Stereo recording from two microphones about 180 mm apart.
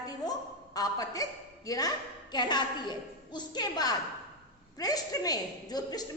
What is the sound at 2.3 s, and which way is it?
A woman's voice, 25° left (ahead or behind).